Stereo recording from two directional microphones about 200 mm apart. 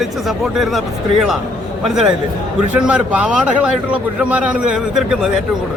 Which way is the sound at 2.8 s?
5° right (ahead or behind).